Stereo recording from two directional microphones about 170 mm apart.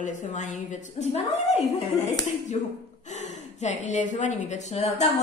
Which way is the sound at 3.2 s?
45° left (ahead or behind).